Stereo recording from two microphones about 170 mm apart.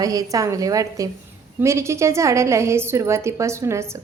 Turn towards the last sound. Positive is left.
turn(degrees=-15)  # may be behind; listen again after turning